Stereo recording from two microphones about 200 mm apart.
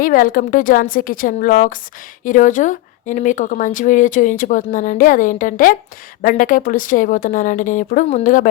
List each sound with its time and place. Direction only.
0.0 s a woman's voice: 45° left (ahead or behind)